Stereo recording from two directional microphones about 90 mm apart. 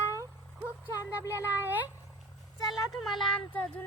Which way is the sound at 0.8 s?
25° right (ahead or behind).